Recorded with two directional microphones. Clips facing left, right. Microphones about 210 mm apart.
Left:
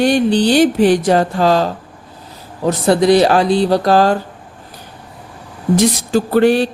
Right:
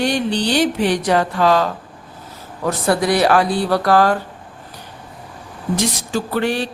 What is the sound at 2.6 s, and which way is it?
Speech, 25° left (ahead or behind).